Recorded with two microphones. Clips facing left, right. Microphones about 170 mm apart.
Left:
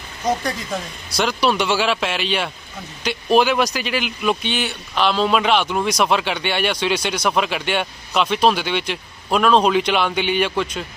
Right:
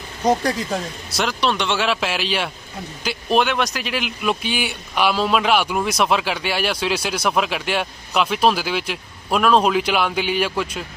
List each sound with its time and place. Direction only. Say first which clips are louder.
0.3 s speech: right 3 dB; 35° right (ahead or behind)
1.1 s a man's voice: left 3 dB; centre (ahead or behind)